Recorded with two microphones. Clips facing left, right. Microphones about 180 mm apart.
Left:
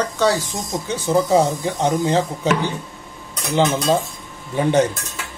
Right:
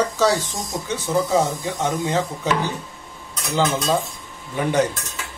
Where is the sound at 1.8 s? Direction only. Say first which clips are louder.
Left 4 dB; 30° left (ahead or behind).